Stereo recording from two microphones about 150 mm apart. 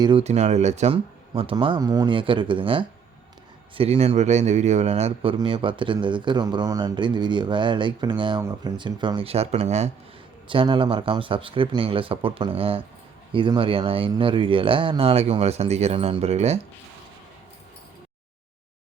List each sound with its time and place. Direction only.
0.0 s speech: 35° right (ahead or behind)
0.3 s speech: 50° right (ahead or behind)
1.3 s speech: 35° right (ahead or behind)
10.5 s speech: 35° right (ahead or behind)